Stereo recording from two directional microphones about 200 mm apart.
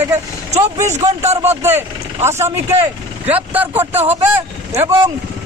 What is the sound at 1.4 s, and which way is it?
Speech, 15° right (ahead or behind).